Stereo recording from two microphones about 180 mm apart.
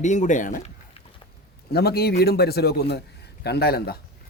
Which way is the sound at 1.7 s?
60° left (ahead or behind).